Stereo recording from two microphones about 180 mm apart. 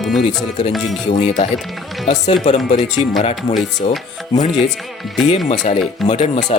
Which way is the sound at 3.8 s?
35° left (ahead or behind).